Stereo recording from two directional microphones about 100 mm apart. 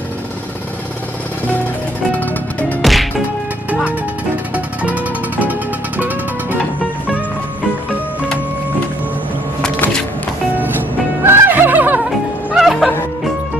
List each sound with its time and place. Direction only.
2.1 s music: 15° left (ahead or behind)
2.8 s whip: centre (ahead or behind)
4.6 s music: 15° right (ahead or behind)
11.2 s music: 20° right (ahead or behind)
12.5 s music: 5° right (ahead or behind)